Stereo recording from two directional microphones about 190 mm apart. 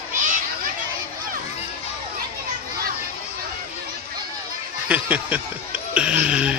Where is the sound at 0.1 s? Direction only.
45° right (ahead or behind).